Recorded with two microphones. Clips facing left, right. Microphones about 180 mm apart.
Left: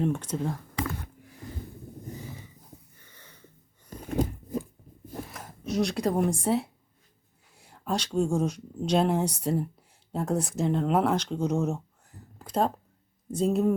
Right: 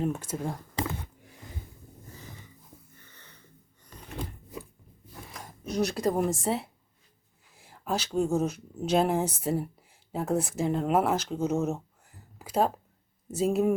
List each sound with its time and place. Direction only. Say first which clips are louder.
0.0 s speech: left 2 dB; 5° right (ahead or behind)
3.0 s wheeze: left 1 dB; 10° left (ahead or behind)
3.8 s biting: left 10 dB; 45° left (ahead or behind)
5.3 s speech: left 1 dB; centre (ahead or behind)
12.4 s a sound: even; 5° right (ahead or behind)
13.3 s speech: left 1 dB; 5° right (ahead or behind)